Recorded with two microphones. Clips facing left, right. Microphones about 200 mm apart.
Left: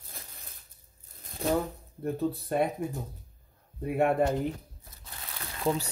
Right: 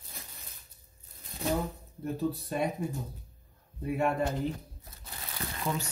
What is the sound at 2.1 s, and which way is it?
Speech, 55° left (ahead or behind).